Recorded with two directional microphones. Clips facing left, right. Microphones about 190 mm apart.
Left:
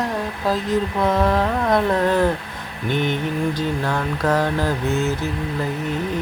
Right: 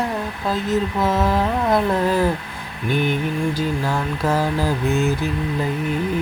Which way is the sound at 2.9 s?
10° right (ahead or behind).